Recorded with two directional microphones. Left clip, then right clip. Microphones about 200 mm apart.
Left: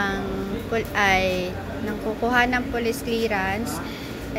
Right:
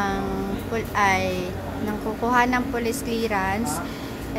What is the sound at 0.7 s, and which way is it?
Speech, centre (ahead or behind).